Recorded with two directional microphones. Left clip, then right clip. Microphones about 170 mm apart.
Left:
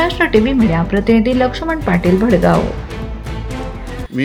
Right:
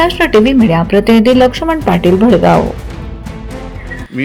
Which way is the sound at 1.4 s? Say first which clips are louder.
Right 6 dB; 20° right (ahead or behind).